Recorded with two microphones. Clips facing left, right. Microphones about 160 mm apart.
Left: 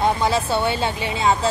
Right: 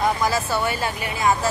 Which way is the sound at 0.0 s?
25° left (ahead or behind).